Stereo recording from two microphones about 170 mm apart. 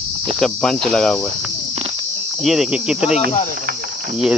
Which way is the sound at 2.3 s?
Centre (ahead or behind).